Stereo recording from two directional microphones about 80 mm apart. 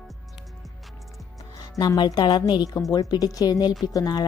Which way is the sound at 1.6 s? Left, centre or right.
Left.